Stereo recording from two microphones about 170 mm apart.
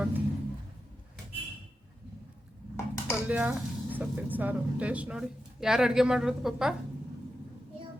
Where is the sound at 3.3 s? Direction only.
10° right (ahead or behind).